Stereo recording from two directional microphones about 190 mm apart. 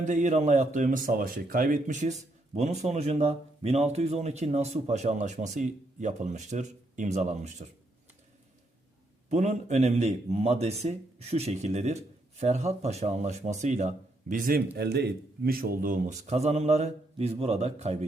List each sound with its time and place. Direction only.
0.0 s a man's voice: 40° right (ahead or behind)
9.3 s a man's voice: 35° right (ahead or behind)
14.8 s a man's voice: 60° right (ahead or behind); by 17.9 s 35° right (ahead or behind)